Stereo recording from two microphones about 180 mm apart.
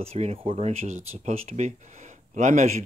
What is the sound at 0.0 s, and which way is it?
Speech, 35° right (ahead or behind).